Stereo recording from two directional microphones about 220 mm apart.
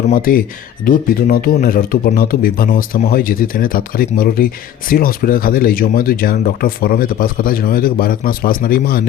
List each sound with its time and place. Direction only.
0.1 s speech: 40° left (ahead or behind)